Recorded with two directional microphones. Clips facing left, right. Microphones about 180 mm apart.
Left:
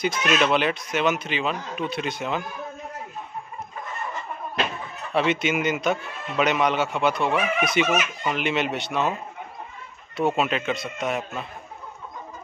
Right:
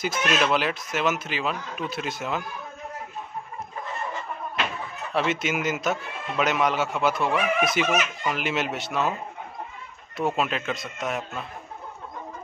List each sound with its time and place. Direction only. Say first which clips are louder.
0.0 s speech: left 2 dB; centre (ahead or behind)
5.1 s speech: left 3 dB; centre (ahead or behind)
10.1 s speech: left 3 dB; centre (ahead or behind)